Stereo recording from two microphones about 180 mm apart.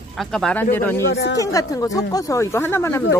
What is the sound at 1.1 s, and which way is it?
Speech, 75° left (ahead or behind).